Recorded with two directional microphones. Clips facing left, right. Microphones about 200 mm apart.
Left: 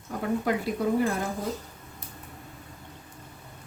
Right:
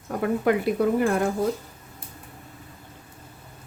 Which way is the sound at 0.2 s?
60° right (ahead or behind).